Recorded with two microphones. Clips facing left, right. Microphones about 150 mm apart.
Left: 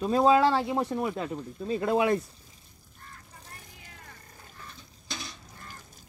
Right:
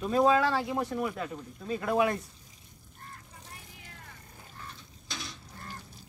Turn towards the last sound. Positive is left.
turn(degrees=0)  # may be behind; listen again after turning